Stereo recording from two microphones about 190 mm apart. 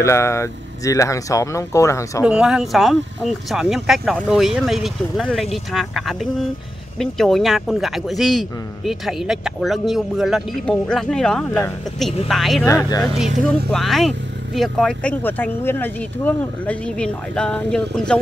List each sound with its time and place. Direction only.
0.0 s speech: 15° left (ahead or behind)
2.2 s speech: 5° right (ahead or behind)
12.6 s speech: 20° left (ahead or behind)
13.5 s speech: 5° left (ahead or behind)